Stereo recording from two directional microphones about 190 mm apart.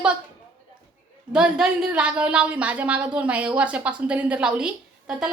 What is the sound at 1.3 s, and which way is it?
A woman's voice, 5° right (ahead or behind).